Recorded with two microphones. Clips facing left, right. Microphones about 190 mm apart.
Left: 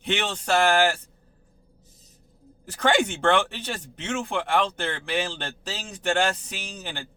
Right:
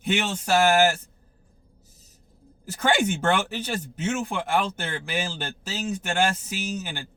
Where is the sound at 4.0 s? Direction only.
5° right (ahead or behind).